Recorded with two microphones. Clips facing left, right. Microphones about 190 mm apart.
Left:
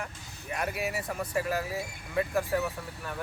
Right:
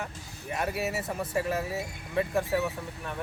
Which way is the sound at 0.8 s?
Centre (ahead or behind).